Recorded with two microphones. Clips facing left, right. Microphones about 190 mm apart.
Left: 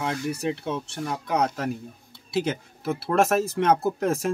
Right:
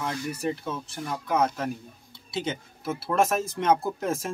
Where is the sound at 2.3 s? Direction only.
65° left (ahead or behind).